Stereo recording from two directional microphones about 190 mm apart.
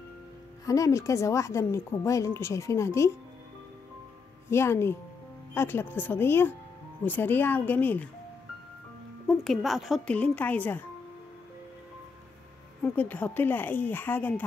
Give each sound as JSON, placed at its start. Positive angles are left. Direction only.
{"t": 0.7, "sound": "a woman's voice", "side_deg": 15}
{"t": 4.5, "sound": "a woman's voice", "side_deg": 15}
{"t": 9.3, "sound": "speech", "side_deg": 0}
{"t": 12.8, "sound": "a woman's voice", "side_deg": 10}